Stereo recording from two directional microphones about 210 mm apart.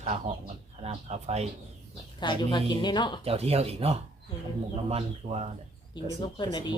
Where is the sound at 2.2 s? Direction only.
20° left (ahead or behind).